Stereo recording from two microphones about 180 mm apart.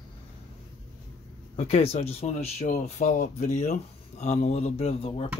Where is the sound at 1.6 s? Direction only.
35° left (ahead or behind).